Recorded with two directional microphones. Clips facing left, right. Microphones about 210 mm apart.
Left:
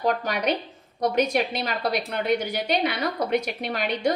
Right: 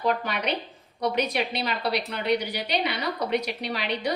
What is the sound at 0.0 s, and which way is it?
A woman's voice, 45° left (ahead or behind).